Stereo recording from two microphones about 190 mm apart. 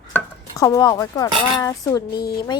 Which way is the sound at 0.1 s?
15° left (ahead or behind).